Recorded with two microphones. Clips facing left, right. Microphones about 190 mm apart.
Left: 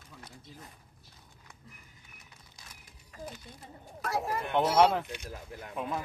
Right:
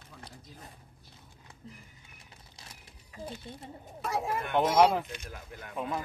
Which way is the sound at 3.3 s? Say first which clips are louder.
Right 4 dB; 25° right (ahead or behind).